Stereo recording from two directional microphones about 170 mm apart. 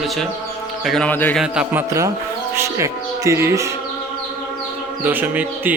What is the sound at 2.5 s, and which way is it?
Speech, 15° right (ahead or behind).